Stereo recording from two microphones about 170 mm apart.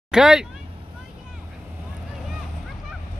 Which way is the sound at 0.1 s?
5° right (ahead or behind).